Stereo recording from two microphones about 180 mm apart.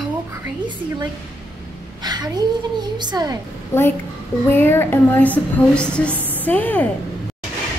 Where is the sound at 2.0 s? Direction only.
20° right (ahead or behind).